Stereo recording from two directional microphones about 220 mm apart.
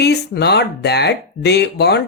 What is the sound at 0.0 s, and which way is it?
Speech, 50° left (ahead or behind).